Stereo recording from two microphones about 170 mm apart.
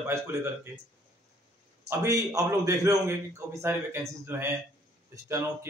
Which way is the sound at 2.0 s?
20° right (ahead or behind).